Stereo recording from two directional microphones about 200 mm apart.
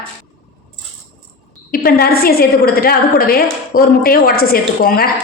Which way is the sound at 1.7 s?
50° left (ahead or behind).